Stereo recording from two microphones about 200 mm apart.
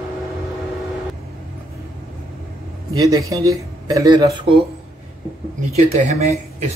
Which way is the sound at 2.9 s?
20° right (ahead or behind).